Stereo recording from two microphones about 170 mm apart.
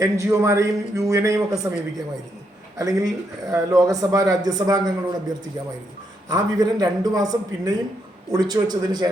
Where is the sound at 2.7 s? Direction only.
20° right (ahead or behind).